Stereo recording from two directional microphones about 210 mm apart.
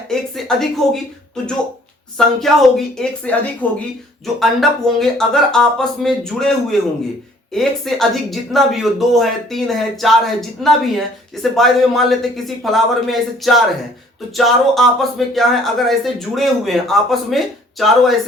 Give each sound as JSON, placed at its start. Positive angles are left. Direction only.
{"t": 0.1, "sound": "speech", "side_deg": 0}
{"t": 2.1, "sound": "speech", "side_deg": 0}